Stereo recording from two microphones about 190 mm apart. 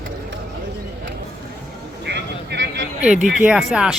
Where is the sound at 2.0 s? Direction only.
65° right (ahead or behind).